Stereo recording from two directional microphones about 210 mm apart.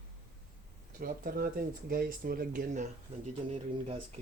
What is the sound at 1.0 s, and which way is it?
Speech, 40° right (ahead or behind).